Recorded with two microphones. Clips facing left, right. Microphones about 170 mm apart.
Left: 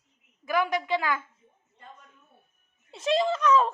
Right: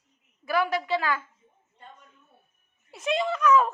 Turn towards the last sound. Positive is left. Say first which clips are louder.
# right 1 dB
turn(degrees=25)  # may be behind; listen again after turning